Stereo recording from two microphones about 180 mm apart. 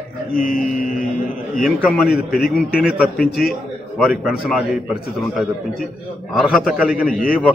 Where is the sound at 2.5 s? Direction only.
5° right (ahead or behind).